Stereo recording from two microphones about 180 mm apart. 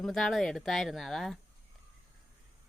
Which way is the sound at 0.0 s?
Centre (ahead or behind).